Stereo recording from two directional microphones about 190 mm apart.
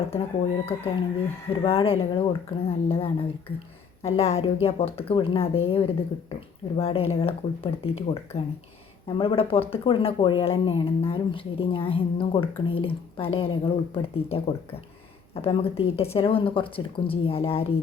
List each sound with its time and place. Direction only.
0.1 s speech: 30° left (ahead or behind)